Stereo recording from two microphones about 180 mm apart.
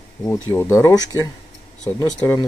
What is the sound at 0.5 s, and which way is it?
Speech, 15° left (ahead or behind).